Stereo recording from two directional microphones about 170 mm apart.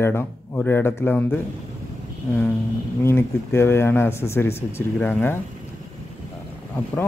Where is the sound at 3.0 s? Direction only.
15° left (ahead or behind).